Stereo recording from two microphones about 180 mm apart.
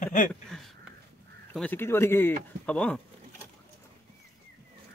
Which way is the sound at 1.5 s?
10° left (ahead or behind).